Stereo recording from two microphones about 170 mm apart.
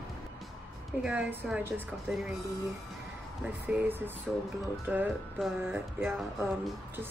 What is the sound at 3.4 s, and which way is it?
A woman's voice, 5° right (ahead or behind).